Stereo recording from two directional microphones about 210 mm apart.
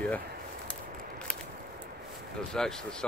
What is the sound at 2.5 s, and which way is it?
Speech, 5° left (ahead or behind).